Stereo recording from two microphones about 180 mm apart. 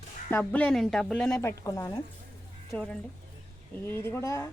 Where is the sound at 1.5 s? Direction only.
20° left (ahead or behind).